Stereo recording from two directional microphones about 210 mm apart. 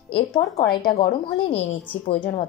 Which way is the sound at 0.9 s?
25° left (ahead or behind).